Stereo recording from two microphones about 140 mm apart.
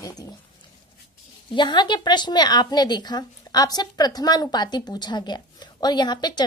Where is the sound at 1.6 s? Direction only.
35° left (ahead or behind).